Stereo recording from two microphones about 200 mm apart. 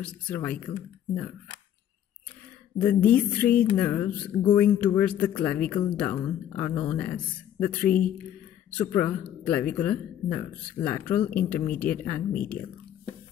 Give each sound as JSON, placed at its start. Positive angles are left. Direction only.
{"t": 0.0, "sound": "speech", "side_deg": 5}
{"t": 2.8, "sound": "speech", "side_deg": 5}